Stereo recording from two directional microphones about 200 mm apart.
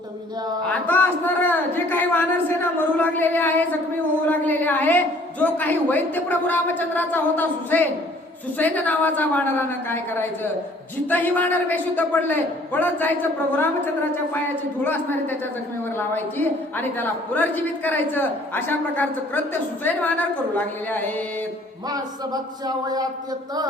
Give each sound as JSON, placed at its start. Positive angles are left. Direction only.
{"t": 0.7, "sound": "a man's voice", "side_deg": 10}
{"t": 14.3, "sound": "a man's voice", "side_deg": 10}
{"t": 21.8, "sound": "speech", "side_deg": -20}